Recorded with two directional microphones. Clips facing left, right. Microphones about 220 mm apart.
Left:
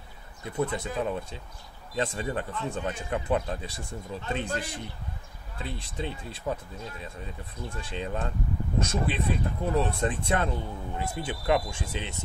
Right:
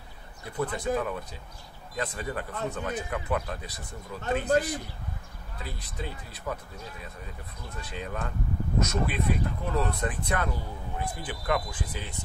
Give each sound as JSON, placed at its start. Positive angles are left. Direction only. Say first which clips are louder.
{"t": 0.4, "sound": "speech", "louder": "left 2 dB", "side_deg": 25}
{"t": 7.7, "sound": "speech", "louder": "left 2 dB", "side_deg": 25}